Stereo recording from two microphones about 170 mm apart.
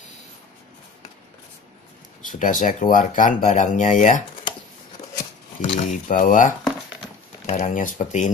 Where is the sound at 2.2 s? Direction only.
50° left (ahead or behind).